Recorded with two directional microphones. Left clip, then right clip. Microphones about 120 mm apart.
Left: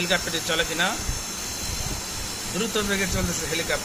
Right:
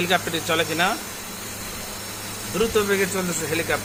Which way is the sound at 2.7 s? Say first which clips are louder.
Right 3 dB; 45° right (ahead or behind).